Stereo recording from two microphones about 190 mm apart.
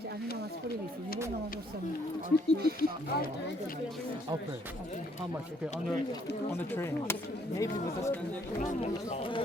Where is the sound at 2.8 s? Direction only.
50° left (ahead or behind).